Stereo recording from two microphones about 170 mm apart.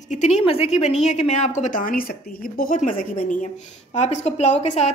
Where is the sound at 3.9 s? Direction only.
40° left (ahead or behind).